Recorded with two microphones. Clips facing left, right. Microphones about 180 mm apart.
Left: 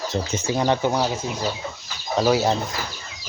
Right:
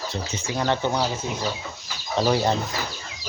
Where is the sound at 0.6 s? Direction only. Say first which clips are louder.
Left 2 dB; 15° left (ahead or behind).